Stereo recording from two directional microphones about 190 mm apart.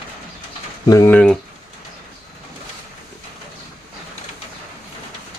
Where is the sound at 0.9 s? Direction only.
15° left (ahead or behind).